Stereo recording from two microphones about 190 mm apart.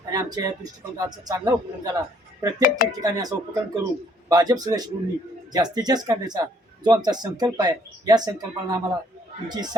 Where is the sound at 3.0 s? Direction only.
20° right (ahead or behind).